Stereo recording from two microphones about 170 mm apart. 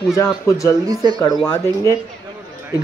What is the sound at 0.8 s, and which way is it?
Speech, 25° right (ahead or behind).